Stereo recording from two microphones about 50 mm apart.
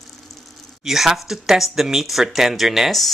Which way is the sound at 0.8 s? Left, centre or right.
Centre.